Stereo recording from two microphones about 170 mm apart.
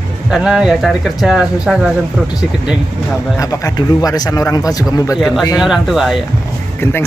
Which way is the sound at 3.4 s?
20° left (ahead or behind).